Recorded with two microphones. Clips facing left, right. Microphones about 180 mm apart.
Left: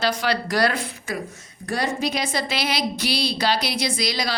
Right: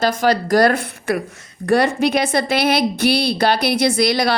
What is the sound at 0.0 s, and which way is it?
A woman's voice, 45° right (ahead or behind).